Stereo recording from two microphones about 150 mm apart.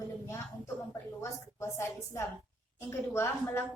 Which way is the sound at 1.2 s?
15° left (ahead or behind).